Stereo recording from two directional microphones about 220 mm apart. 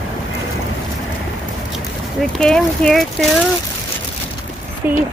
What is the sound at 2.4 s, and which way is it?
Speech, 5° left (ahead or behind).